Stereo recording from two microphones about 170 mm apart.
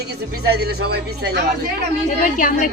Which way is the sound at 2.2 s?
55° left (ahead or behind).